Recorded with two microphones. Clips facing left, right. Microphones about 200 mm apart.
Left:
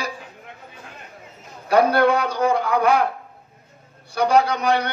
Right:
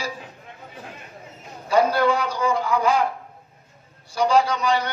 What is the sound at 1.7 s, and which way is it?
A man's voice, 60° left (ahead or behind).